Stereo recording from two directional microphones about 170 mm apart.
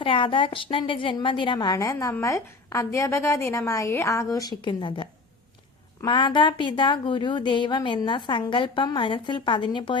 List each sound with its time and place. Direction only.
0.0 s a woman's voice: 30° left (ahead or behind)
6.1 s a woman's voice: 30° left (ahead or behind)